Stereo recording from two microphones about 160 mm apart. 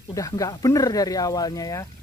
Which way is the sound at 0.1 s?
20° left (ahead or behind).